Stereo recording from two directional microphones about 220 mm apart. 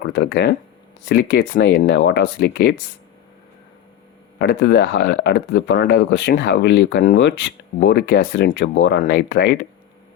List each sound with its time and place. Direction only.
0.0 s speech: 45° left (ahead or behind)
4.4 s speech: 50° left (ahead or behind)